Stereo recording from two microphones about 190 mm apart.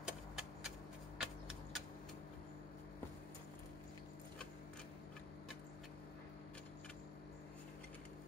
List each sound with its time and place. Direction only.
0.0 s vehicle: 5° right (ahead or behind)